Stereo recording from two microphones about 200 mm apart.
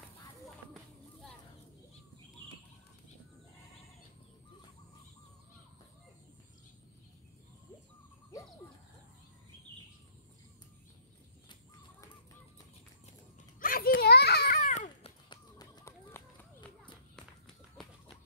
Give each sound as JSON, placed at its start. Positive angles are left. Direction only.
{"t": 13.6, "sound": "children playing", "side_deg": 45}
{"t": 15.2, "sound": "run", "side_deg": 20}